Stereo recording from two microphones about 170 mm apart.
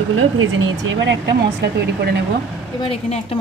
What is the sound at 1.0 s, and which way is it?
Speech, 85° right.